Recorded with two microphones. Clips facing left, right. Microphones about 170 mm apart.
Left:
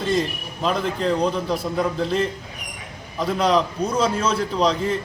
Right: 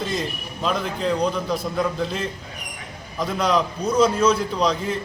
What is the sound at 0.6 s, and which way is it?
Speech, centre (ahead or behind).